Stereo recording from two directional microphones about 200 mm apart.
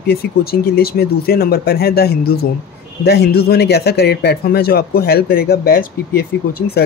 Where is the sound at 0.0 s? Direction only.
50° left (ahead or behind).